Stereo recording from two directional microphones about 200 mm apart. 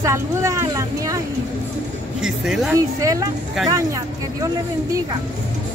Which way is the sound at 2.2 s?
Centre (ahead or behind).